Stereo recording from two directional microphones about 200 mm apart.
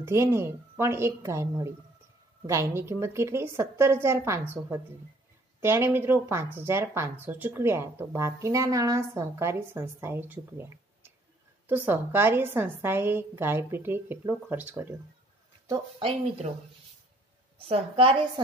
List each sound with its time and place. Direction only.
0.0 s speech: 15° right (ahead or behind)
15.6 s speech: 20° right (ahead or behind)
17.6 s a woman's voice: 25° right (ahead or behind)